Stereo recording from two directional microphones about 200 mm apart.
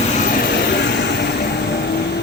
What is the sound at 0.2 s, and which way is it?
Vehicle, 45° left (ahead or behind).